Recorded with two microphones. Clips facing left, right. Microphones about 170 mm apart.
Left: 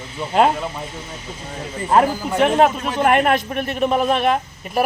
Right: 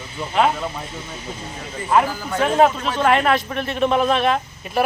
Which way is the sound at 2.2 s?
20° left (ahead or behind).